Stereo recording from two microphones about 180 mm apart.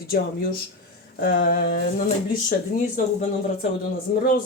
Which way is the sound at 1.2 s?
55° left (ahead or behind).